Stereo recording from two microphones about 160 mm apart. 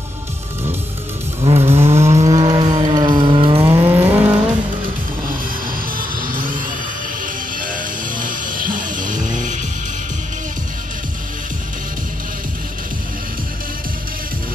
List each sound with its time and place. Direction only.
1.4 s vehicle: 40° right (ahead or behind)
1.9 s vehicle: 15° right (ahead or behind)
2.2 s vehicle: 25° right (ahead or behind)
3.6 s vehicle: 15° right (ahead or behind)
5.9 s music: 60° right (ahead or behind)